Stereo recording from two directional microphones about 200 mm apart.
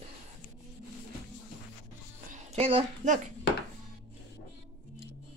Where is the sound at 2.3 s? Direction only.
35° right (ahead or behind).